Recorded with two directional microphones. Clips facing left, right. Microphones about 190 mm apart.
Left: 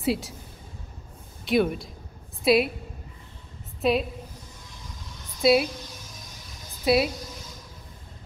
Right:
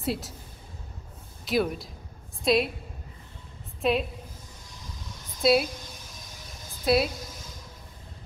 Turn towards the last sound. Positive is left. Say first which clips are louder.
# left 2 dB
turn(degrees=0)  # may be behind; listen again after turning